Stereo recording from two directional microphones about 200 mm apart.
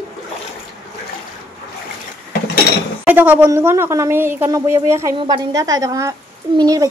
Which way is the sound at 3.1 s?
10° right (ahead or behind).